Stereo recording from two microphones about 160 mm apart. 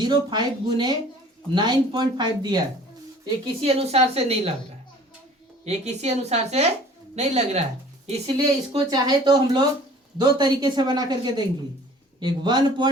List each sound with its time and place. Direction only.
0.0 s a woman's voice: 25° right (ahead or behind)
3.4 s a woman's voice: 40° right (ahead or behind)
5.6 s a woman's voice: 40° right (ahead or behind)
8.7 s a woman's voice: 25° right (ahead or behind)